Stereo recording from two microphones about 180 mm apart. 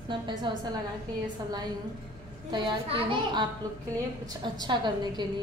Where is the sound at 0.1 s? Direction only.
25° right (ahead or behind).